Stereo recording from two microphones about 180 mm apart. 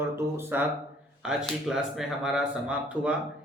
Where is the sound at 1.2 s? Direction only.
Centre (ahead or behind).